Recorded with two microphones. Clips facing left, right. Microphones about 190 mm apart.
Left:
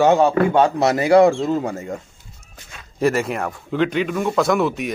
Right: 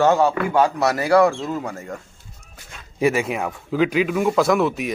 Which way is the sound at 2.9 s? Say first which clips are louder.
Left 1 dB; 5° right (ahead or behind).